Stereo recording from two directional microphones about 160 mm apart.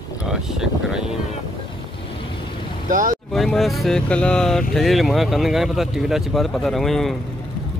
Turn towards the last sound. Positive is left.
turn(degrees=0)  # may be behind; listen again after turning